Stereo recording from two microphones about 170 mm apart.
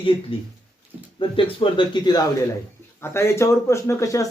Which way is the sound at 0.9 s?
10° right (ahead or behind).